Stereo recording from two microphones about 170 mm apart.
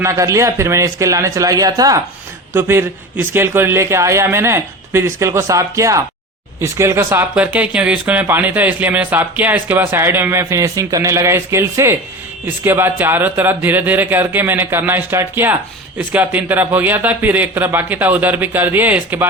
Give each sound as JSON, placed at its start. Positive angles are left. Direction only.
{"t": 0.0, "sound": "speech", "side_deg": -15}